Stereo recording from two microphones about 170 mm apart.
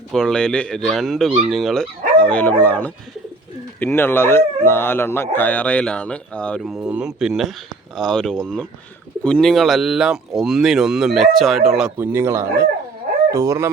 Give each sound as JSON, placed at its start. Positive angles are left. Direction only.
{"t": 0.1, "sound": "speech", "side_deg": 5}
{"t": 11.9, "sound": "speech", "side_deg": -15}